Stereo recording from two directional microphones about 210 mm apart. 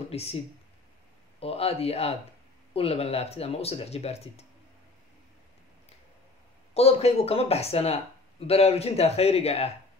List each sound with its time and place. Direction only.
0.1 s speech: 30° left (ahead or behind)
1.4 s speech: 30° left (ahead or behind)
6.7 s speech: 30° left (ahead or behind)